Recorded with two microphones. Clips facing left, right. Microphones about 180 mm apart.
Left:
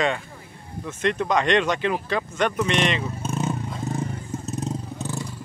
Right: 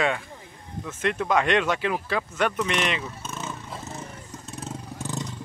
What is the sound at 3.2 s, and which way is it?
Vehicle, 30° left (ahead or behind).